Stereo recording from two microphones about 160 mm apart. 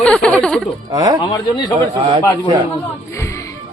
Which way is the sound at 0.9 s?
25° right (ahead or behind).